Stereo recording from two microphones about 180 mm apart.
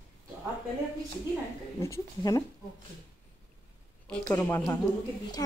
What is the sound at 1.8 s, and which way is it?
Speech, 15° left (ahead or behind).